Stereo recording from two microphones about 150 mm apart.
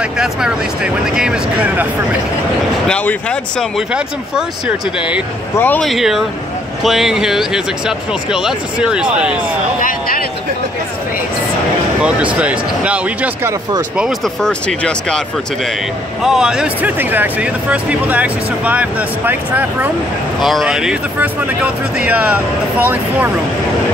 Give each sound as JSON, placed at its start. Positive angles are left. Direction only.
{"t": 0.0, "sound": "speech", "side_deg": -5}
{"t": 2.9, "sound": "speech", "side_deg": 10}
{"t": 3.9, "sound": "speech", "side_deg": -5}
{"t": 5.6, "sound": "speech", "side_deg": 10}
{"t": 5.9, "sound": "speech", "side_deg": 0}
{"t": 9.8, "sound": "speech", "side_deg": 70}
{"t": 12.0, "sound": "speech", "side_deg": -10}
{"t": 13.9, "sound": "speech", "side_deg": 0}